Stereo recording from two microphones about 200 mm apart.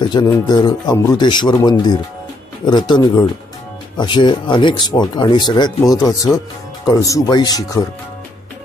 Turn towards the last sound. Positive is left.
turn(degrees=20)  # may be behind; listen again after turning